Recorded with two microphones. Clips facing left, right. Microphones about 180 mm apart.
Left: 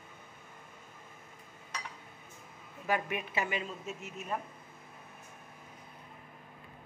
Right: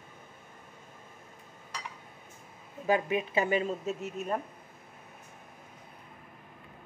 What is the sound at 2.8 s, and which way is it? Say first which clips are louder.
Speech: right 6 dB; 25° right (ahead or behind).